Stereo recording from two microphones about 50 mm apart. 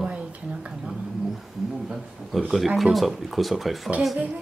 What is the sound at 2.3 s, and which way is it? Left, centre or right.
Speech, centre.